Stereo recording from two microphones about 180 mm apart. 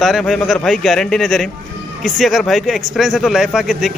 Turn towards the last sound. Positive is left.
turn(degrees=0)  # may be behind; listen again after turning